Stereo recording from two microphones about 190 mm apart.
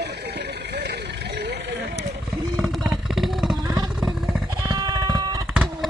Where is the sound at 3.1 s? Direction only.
Centre (ahead or behind).